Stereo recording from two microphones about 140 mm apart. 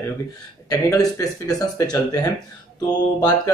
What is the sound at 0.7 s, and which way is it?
Speech, 25° left (ahead or behind).